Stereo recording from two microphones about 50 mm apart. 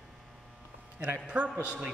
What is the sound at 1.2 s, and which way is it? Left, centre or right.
Speech, right.